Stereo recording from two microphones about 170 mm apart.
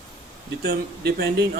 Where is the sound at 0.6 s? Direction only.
75° right (ahead or behind).